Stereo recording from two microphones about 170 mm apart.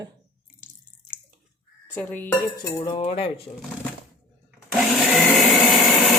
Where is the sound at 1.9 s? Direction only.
10° left (ahead or behind).